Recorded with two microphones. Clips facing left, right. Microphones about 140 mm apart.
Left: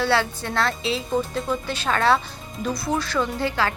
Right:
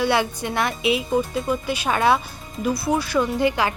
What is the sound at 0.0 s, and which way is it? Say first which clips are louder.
Speech: right 1 dB; 15° right (ahead or behind).